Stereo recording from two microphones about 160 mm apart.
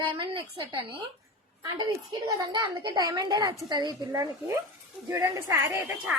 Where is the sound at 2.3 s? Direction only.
25° right (ahead or behind).